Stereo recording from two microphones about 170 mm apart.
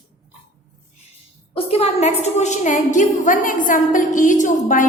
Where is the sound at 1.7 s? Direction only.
40° left (ahead or behind).